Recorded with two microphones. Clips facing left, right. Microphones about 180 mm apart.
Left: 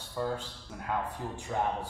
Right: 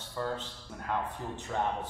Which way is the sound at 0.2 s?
10° left (ahead or behind).